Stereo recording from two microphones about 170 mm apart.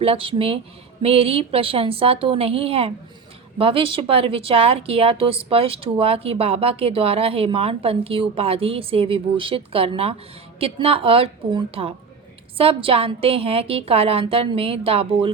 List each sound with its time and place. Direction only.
0.0 s a woman's voice: 35° right (ahead or behind)